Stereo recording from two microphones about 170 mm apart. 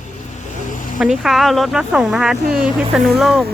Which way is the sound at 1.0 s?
Centre (ahead or behind).